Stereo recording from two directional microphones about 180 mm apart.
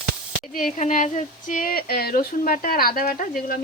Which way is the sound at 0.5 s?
45° left (ahead or behind).